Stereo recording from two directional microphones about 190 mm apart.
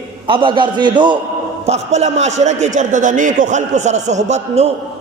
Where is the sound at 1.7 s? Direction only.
35° right (ahead or behind).